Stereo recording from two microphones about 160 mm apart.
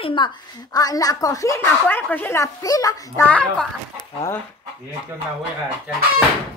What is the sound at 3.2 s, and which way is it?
Speech, 10° left (ahead or behind).